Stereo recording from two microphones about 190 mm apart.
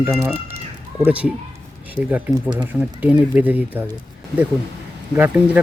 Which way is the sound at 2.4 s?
25° right (ahead or behind).